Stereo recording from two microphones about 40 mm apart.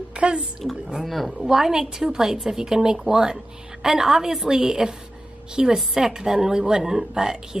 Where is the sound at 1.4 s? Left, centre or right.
Centre.